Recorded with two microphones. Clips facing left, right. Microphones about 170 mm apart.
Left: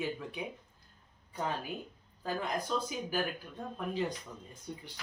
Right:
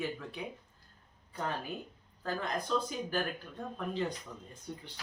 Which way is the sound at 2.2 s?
10° left (ahead or behind).